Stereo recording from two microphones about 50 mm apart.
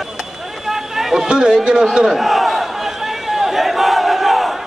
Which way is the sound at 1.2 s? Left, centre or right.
Centre.